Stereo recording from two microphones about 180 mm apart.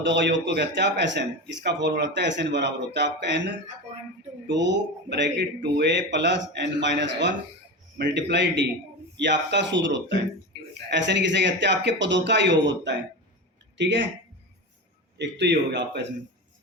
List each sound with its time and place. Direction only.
0.0 s speech: 75° right (ahead or behind)
15.2 s speech: 70° right (ahead or behind)